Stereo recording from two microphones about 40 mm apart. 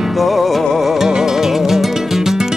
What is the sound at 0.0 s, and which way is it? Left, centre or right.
Music, centre.